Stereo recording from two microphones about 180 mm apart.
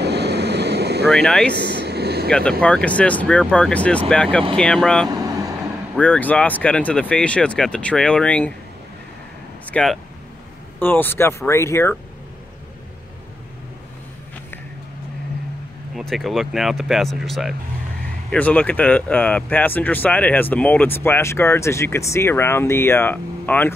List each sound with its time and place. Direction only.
0.0 s vehicle: 65° right (ahead or behind)
1.1 s speech: 5° left (ahead or behind)
1.5 s a sound: 70° right (ahead or behind)
2.2 s speech: 5° left (ahead or behind)
5.1 s vehicle: 20° right (ahead or behind)
5.9 s speech: 10° left (ahead or behind)
9.7 s speech: 5° left (ahead or behind)
16.0 s speech: centre (ahead or behind)